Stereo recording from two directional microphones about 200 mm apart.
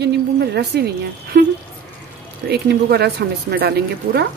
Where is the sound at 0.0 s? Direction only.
55° right (ahead or behind).